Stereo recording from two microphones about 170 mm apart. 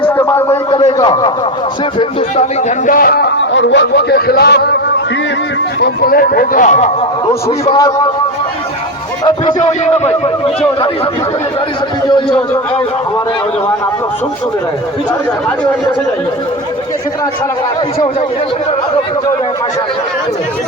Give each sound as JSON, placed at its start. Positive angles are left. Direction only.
{"t": 0.2, "sound": "a sound", "side_deg": 15}
{"t": 0.9, "sound": "a man's voice", "side_deg": 25}
{"t": 2.3, "sound": "a man's voice", "side_deg": 45}
{"t": 5.8, "sound": "speech", "side_deg": 60}
{"t": 7.6, "sound": "a man's voice", "side_deg": 25}
{"t": 9.2, "sound": "a man's voice", "side_deg": 25}
{"t": 9.8, "sound": "a man's voice", "side_deg": 40}